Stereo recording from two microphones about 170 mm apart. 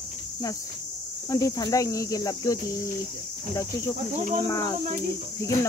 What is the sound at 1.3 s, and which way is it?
Speech, 20° left (ahead or behind).